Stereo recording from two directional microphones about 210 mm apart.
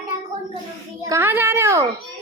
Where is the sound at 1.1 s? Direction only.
10° right (ahead or behind).